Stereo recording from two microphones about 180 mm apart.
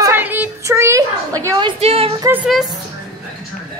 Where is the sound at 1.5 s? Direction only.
25° right (ahead or behind).